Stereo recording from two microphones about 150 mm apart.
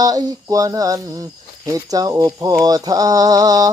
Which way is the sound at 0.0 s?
25° right (ahead or behind).